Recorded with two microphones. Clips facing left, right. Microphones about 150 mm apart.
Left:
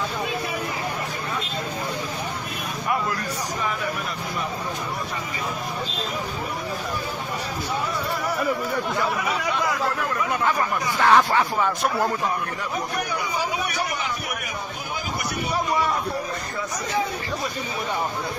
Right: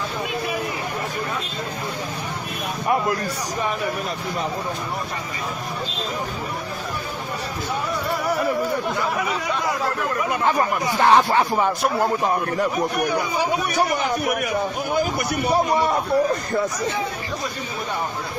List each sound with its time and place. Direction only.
11.0 s speech: 20° right (ahead or behind)
13.7 s speech: 50° right (ahead or behind)